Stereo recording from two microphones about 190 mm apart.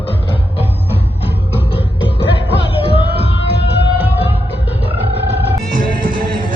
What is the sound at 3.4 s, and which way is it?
Music, 65° left (ahead or behind).